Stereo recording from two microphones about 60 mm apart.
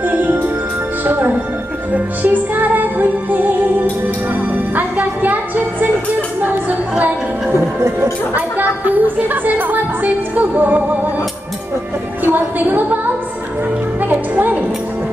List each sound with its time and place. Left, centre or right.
0.0 s music: right
1.0 s speech: right
2.0 s music: right
7.5 s speech: right
8.4 s music: right
12.3 s a woman's voice: right
14.0 s a woman's voice: right